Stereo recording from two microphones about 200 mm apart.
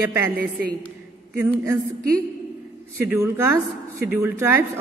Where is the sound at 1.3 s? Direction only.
10° right (ahead or behind).